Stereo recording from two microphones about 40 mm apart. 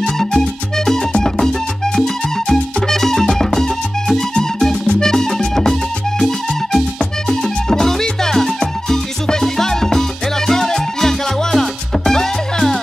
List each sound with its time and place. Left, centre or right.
0.0 s music: centre